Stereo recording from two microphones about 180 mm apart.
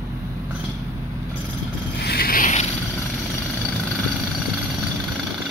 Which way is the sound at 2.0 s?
60° left (ahead or behind).